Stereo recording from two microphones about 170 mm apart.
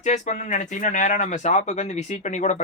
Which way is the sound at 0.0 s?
45° left (ahead or behind).